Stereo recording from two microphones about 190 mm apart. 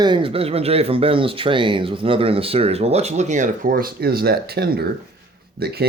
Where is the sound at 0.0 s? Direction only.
25° right (ahead or behind).